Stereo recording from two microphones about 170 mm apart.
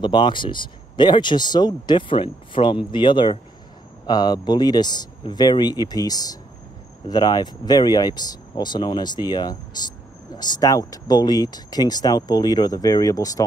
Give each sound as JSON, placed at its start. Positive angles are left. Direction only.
{"t": 0.0, "sound": "speech", "side_deg": 25}